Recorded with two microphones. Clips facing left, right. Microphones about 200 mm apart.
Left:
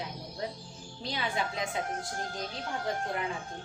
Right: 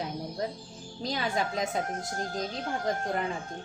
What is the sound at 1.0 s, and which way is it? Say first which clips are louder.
Speech: right 3 dB; 40° right (ahead or behind).